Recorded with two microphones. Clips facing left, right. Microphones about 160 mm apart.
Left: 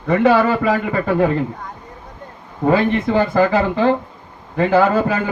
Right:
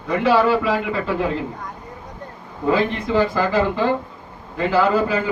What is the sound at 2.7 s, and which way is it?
Speech, 55° left (ahead or behind).